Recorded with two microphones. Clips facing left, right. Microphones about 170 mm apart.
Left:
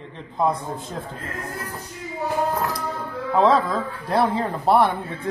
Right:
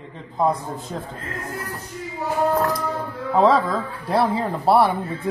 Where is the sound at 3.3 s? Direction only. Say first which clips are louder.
Right 1 dB; centre (ahead or behind).